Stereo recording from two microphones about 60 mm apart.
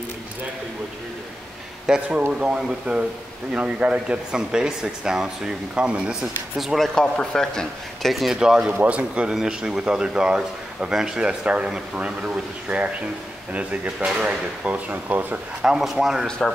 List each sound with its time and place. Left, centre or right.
1.9 s a man's voice: centre
6.2 s speech: centre
7.0 s speech: centre
8.1 s a man's voice: centre; by 15.4 s right
15.6 s speech: centre
16.3 s speech: centre